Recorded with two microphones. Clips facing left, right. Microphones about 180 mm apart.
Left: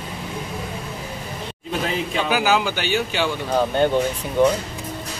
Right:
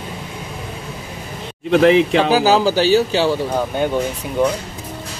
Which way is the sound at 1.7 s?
75° right (ahead or behind).